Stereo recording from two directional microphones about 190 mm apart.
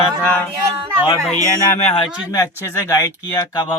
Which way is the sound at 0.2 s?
10° left (ahead or behind).